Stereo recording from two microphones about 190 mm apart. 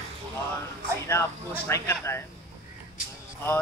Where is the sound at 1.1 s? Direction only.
15° left (ahead or behind).